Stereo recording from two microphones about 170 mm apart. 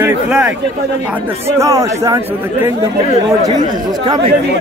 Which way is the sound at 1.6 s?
20° right (ahead or behind).